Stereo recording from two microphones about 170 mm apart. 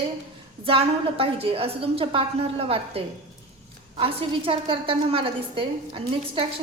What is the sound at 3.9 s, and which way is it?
A woman's voice, 30° right (ahead or behind).